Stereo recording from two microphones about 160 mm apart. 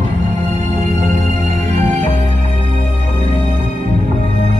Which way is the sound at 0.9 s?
45° right (ahead or behind).